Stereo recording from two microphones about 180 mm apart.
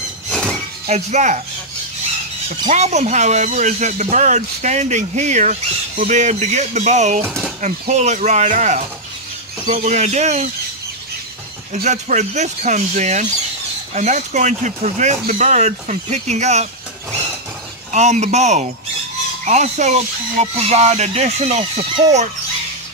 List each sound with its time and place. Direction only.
0.3 s a sound: 5° left (ahead or behind)
0.8 s speech: 40° right (ahead or behind)
2.7 s speech: 40° right (ahead or behind)
7.2 s speech: centre (ahead or behind)
7.8 s speech: 40° right (ahead or behind)
11.7 s speech: 40° right (ahead or behind)
17.9 s speech: 40° right (ahead or behind)